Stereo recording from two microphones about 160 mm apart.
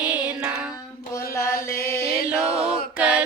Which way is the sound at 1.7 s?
15° left (ahead or behind).